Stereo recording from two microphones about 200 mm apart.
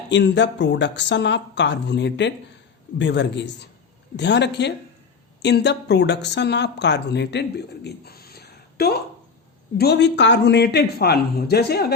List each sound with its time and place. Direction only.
0.1 s a woman's voice: 60° left (ahead or behind)
7.9 s a sound: 50° left (ahead or behind)
9.7 s speech: 55° left (ahead or behind)